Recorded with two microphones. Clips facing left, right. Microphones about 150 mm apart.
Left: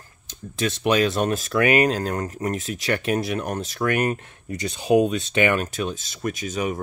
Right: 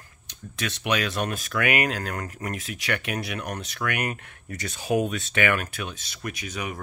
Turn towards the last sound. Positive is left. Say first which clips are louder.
# left 7 dB
turn(degrees=25)  # may be behind; listen again after turning